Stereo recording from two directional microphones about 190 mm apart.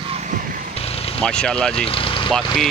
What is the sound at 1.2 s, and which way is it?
Speech, 5° left (ahead or behind).